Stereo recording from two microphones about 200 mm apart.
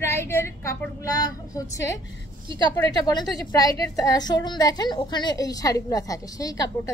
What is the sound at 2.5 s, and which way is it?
A woman's voice, 20° left (ahead or behind).